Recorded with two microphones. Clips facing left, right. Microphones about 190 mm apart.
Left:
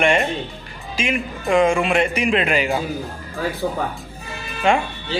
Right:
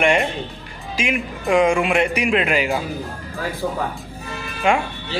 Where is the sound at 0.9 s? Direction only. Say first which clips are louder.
Even; 15° right (ahead or behind).